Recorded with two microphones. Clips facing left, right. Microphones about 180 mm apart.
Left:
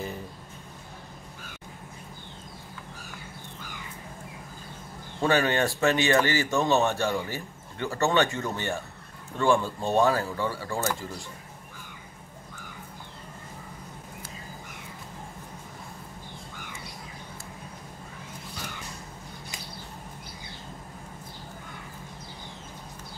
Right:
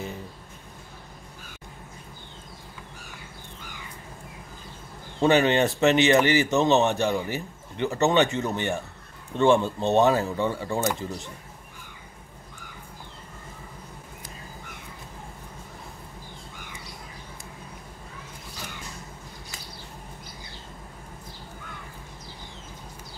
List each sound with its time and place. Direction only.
5.2 s speech: 20° right (ahead or behind)